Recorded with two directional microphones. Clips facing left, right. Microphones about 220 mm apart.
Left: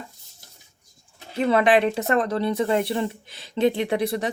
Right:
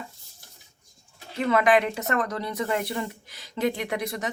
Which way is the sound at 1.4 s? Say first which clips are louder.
Left 3 dB; 30° left (ahead or behind).